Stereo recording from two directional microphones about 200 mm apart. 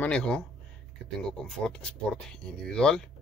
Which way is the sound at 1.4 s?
5° left (ahead or behind).